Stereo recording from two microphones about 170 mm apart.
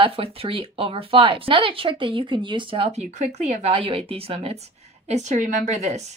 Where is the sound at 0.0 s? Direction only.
35° right (ahead or behind).